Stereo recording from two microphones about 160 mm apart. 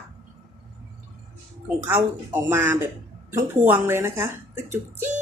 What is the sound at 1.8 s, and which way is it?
A woman's voice, 10° right (ahead or behind).